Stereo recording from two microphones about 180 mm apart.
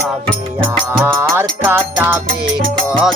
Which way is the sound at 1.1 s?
15° right (ahead or behind).